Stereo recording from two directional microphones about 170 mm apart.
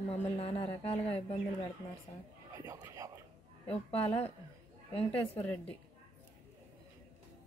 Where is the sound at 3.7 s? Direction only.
35° left (ahead or behind).